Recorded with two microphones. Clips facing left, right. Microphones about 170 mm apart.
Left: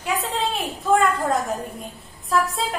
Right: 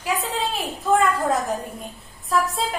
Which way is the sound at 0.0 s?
Centre (ahead or behind).